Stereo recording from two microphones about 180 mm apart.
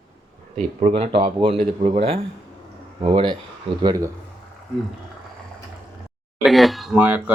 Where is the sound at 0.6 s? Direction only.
35° right (ahead or behind).